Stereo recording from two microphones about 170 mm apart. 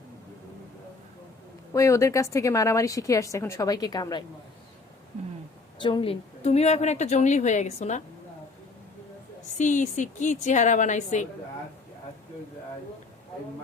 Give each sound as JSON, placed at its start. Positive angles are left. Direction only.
{"t": 1.7, "sound": "speech", "side_deg": 20}
{"t": 5.8, "sound": "a woman's voice", "side_deg": 30}
{"t": 9.6, "sound": "a woman's voice", "side_deg": 45}